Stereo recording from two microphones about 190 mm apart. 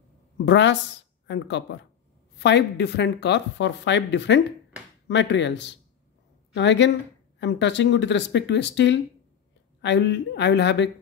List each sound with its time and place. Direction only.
0.5 s speech: 70° left (ahead or behind)